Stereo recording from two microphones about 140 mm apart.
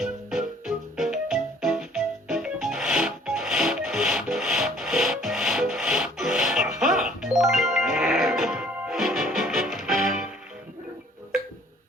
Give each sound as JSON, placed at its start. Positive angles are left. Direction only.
{"t": 0.0, "sound": "music", "side_deg": -5}